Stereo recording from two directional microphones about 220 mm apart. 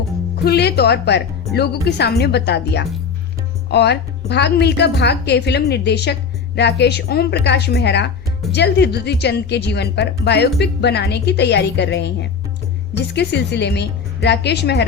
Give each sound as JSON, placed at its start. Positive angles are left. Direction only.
{"t": 0.4, "sound": "a woman's voice", "side_deg": 45}